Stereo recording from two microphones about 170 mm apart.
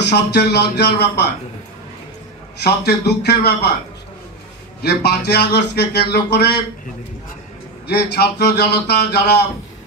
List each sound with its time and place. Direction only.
0.0 s a man's voice: 75° left (ahead or behind)
2.6 s a man's voice: 75° left (ahead or behind)
4.8 s a man's voice: 75° left (ahead or behind)
7.8 s a man's voice: 75° left (ahead or behind)